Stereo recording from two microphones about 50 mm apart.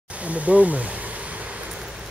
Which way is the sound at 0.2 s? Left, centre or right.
Right.